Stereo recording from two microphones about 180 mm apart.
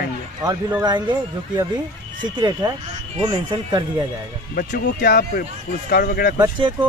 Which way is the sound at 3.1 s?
25° right (ahead or behind).